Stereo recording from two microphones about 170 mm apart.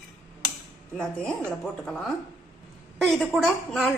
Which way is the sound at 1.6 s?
5° left (ahead or behind).